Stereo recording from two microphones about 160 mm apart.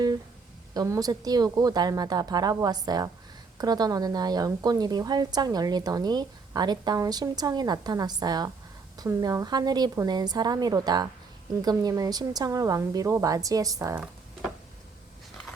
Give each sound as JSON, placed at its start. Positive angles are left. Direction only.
{"t": 0.7, "sound": "a woman's voice", "side_deg": -25}